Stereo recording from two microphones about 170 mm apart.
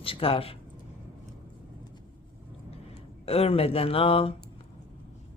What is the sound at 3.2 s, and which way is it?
Speech, 35° left (ahead or behind).